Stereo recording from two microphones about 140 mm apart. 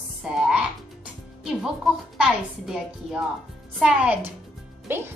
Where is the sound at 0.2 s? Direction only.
5° right (ahead or behind).